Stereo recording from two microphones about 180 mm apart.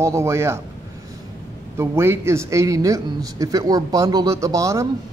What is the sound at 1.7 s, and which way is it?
Speech, 15° right (ahead or behind).